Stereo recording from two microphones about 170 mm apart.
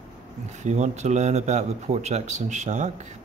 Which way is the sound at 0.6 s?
40° right (ahead or behind).